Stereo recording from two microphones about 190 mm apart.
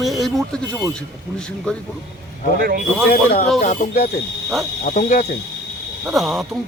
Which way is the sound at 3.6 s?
40° left (ahead or behind).